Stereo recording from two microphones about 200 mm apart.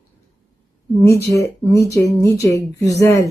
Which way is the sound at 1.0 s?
15° left (ahead or behind).